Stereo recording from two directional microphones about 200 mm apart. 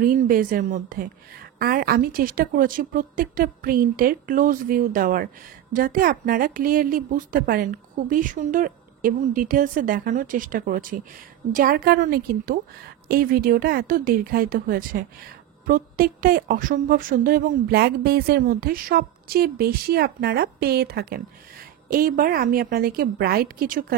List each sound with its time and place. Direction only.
0.0 s a woman's voice: 45° right (ahead or behind)